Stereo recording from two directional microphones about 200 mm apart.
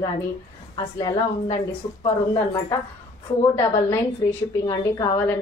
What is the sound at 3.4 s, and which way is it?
A woman's voice, 15° left (ahead or behind).